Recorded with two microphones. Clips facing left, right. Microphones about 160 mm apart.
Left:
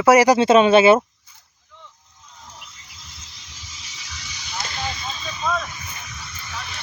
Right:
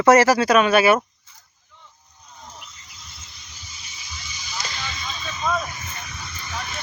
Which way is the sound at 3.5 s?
90° left.